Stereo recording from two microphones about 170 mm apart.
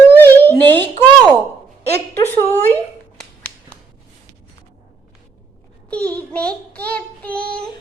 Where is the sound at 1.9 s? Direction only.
15° left (ahead or behind).